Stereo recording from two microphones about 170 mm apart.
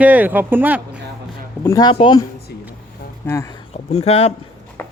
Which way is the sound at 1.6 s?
20° left (ahead or behind).